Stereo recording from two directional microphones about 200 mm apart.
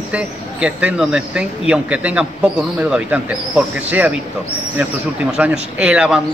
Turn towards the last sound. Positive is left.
turn(degrees=-5)  # may be behind; listen again after turning